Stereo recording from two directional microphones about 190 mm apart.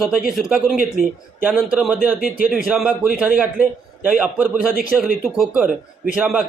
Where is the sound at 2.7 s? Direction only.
5° right (ahead or behind).